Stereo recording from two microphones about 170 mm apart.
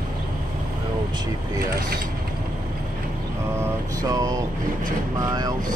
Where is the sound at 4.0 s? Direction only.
20° right (ahead or behind).